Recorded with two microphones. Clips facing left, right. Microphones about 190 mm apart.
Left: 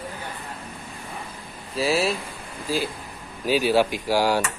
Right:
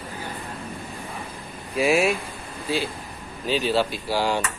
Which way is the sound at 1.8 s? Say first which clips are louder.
Right 2 dB; 30° left (ahead or behind).